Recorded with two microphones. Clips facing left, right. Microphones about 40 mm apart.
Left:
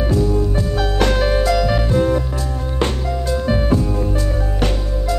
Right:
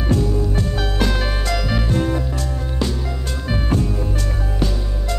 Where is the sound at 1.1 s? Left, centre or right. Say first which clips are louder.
Left 7 dB; centre.